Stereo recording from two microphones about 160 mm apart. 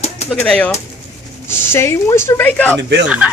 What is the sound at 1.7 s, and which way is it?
A woman's voice, 15° left (ahead or behind).